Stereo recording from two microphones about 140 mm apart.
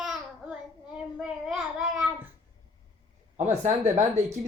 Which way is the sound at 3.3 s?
55° right (ahead or behind).